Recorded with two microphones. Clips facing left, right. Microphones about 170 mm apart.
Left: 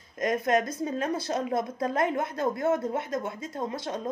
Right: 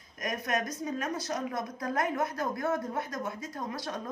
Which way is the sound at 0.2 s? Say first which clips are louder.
Left 7 dB; 25° left (ahead or behind).